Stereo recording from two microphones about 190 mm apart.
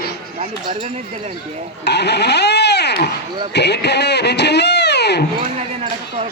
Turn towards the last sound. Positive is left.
turn(degrees=60)  # may be behind; listen again after turning